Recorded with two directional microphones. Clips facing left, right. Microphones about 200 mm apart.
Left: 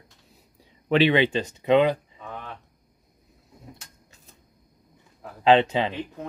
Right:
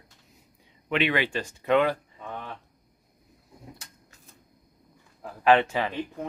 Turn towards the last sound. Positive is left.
turn(degrees=20)  # may be behind; listen again after turning